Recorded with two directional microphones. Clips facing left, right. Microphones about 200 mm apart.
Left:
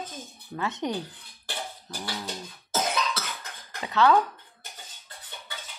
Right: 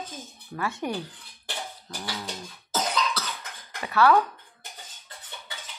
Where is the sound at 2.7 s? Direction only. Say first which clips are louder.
Even; 25° left (ahead or behind).